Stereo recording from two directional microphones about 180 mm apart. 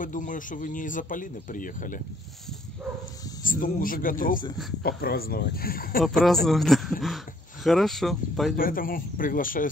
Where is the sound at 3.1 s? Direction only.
20° left (ahead or behind).